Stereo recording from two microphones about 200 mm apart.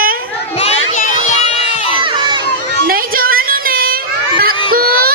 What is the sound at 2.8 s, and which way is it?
Child singing, 45° right (ahead or behind).